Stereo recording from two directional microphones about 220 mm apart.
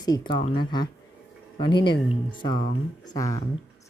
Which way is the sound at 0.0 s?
20° left (ahead or behind).